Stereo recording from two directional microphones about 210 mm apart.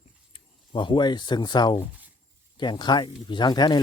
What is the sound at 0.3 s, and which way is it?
A man's voice, 25° left (ahead or behind).